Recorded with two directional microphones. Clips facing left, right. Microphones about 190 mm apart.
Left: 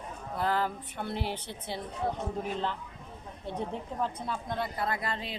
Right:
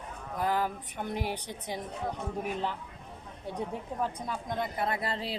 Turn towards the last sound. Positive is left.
turn(degrees=-30)  # may be behind; listen again after turning